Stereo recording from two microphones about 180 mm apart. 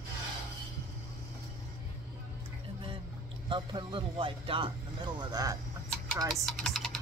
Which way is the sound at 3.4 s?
25° right (ahead or behind).